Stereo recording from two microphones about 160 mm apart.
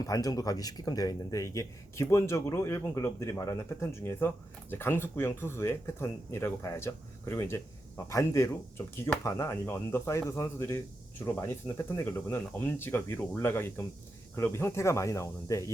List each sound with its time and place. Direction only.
0.0 s speech: 20° left (ahead or behind)